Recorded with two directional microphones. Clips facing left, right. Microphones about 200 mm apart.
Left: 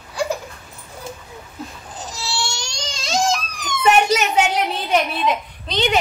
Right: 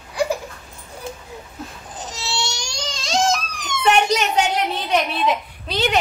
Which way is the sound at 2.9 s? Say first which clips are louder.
Even; centre (ahead or behind).